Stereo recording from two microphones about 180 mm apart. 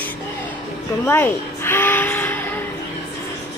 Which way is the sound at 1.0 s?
10° left (ahead or behind).